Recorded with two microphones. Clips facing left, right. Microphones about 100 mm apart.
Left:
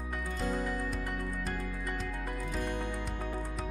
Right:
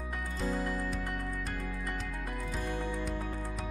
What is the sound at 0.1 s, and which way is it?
Music, centre (ahead or behind).